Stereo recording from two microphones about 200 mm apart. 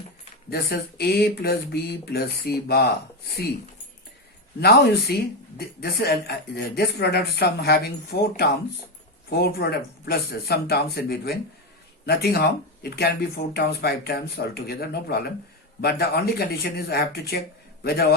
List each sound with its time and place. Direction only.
0.5 s speech: 50° left (ahead or behind)
4.6 s speech: 50° left (ahead or behind)